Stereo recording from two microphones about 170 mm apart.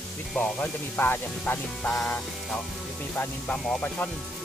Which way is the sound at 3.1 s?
10° left (ahead or behind).